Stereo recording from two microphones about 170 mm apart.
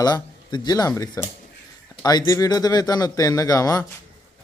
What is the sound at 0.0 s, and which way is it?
A man's voice, 25° left (ahead or behind).